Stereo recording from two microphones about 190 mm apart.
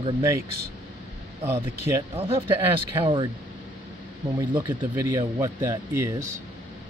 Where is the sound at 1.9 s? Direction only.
15° right (ahead or behind).